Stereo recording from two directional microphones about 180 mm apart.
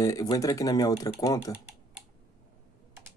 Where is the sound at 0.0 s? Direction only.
20° left (ahead or behind).